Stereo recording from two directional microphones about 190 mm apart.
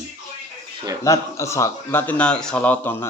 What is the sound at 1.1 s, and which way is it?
A man's voice, 15° left (ahead or behind).